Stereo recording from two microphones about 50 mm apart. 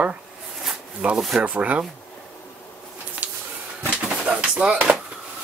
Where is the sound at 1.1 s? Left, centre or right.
Centre.